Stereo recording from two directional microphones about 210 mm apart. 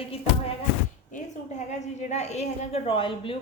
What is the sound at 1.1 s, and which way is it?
A woman's voice, 35° left (ahead or behind).